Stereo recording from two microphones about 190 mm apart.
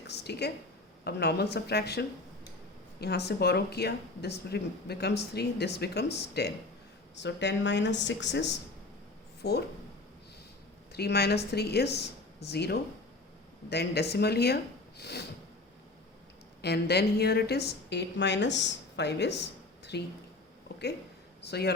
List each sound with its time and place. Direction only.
0.1 s a sound: 60° left (ahead or behind)
1.0 s speech: 60° left (ahead or behind)
10.9 s speech: 60° left (ahead or behind)
16.6 s a woman's voice: 60° left (ahead or behind)
21.4 s speech: 60° left (ahead or behind)